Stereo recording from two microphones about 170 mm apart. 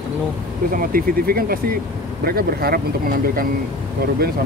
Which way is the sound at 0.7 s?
60° right (ahead or behind).